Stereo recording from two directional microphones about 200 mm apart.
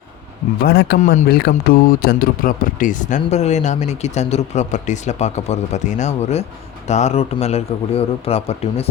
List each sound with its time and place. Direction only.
0.6 s speech: 55° left (ahead or behind); by 8.9 s 30° left (ahead or behind)